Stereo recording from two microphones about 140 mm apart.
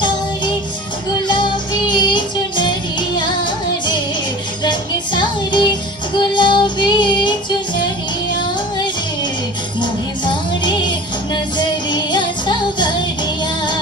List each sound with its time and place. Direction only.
1.3 s music: 35° left (ahead or behind)
4.6 s music: 35° left (ahead or behind)
9.8 s music: 35° left (ahead or behind)